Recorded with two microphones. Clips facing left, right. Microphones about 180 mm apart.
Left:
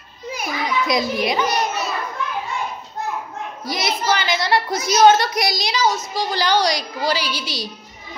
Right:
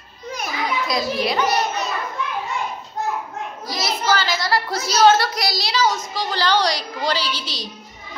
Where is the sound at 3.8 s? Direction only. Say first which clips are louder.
Even; 15° left (ahead or behind).